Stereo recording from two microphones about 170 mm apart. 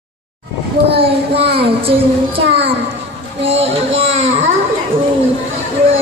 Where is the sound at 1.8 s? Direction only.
35° right (ahead or behind).